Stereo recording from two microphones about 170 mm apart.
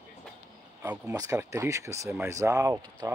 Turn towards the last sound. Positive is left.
turn(degrees=-20)  # may be behind; listen again after turning